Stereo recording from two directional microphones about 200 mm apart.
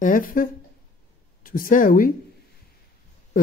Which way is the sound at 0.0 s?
45° left (ahead or behind).